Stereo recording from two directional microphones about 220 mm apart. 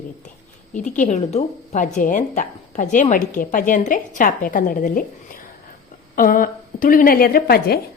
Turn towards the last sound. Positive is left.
turn(degrees=45)  # may be behind; listen again after turning